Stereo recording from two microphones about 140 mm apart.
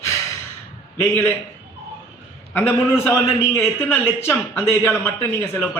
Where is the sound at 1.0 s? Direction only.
15° left (ahead or behind).